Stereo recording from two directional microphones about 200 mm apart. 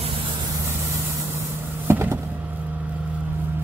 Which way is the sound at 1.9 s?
10° right (ahead or behind).